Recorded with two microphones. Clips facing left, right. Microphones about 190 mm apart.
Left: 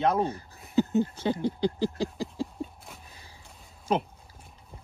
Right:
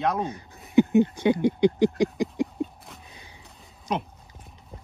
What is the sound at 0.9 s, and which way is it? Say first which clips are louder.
Speech: right 6 dB; 15° right (ahead or behind).